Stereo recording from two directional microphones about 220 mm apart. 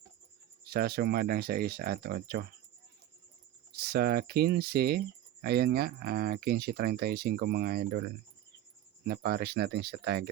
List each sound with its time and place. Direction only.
0.6 s speech: 45° right (ahead or behind)
3.7 s speech: 45° right (ahead or behind)